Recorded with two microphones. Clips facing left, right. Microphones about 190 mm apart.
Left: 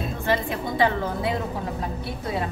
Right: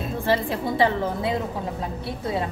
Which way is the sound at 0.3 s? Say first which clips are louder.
Right 2 dB; 30° right (ahead or behind).